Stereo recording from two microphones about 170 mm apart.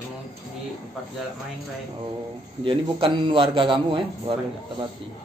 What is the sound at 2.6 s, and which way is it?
A man's voice, 30° right (ahead or behind).